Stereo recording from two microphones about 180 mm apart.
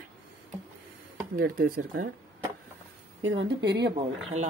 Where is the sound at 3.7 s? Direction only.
70° right (ahead or behind).